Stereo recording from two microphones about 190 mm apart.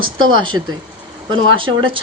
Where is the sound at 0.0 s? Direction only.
25° right (ahead or behind).